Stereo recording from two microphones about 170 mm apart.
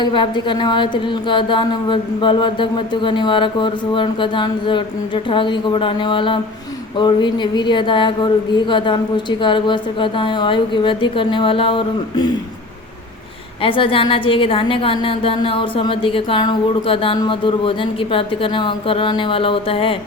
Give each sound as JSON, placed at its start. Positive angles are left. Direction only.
{"t": 0.0, "sound": "a woman's voice", "side_deg": 25}
{"t": 13.6, "sound": "a woman's voice", "side_deg": 30}